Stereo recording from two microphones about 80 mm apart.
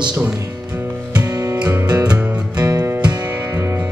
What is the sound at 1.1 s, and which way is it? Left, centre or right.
Music, right.